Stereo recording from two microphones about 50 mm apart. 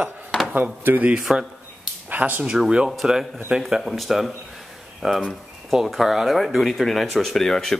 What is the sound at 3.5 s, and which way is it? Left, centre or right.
Speech, centre.